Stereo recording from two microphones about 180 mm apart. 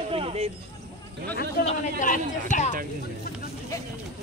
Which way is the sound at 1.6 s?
45° left (ahead or behind).